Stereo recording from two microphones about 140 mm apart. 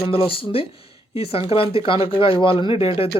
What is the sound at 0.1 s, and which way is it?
Speech, 40° left (ahead or behind).